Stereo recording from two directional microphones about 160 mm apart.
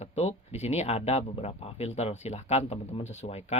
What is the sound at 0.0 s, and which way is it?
Speech, 40° left (ahead or behind).